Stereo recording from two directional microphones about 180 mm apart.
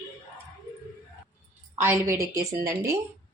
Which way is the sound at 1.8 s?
15° right (ahead or behind).